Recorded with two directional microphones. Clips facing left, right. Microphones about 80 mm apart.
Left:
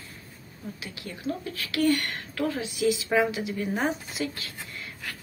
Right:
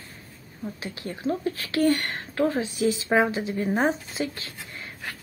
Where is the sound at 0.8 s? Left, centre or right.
Right.